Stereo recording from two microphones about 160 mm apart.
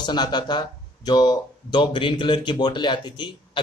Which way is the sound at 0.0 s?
25° left (ahead or behind).